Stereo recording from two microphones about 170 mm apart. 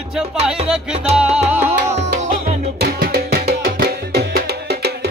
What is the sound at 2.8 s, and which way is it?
Music, 65° right (ahead or behind).